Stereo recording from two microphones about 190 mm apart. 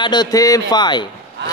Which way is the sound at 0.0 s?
20° left (ahead or behind).